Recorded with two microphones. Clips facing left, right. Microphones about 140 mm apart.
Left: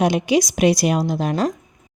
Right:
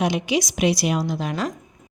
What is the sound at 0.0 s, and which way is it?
A woman's voice, 45° left (ahead or behind).